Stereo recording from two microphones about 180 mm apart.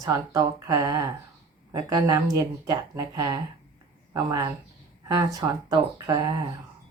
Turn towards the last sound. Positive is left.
turn(degrees=-20)  # may be behind; listen again after turning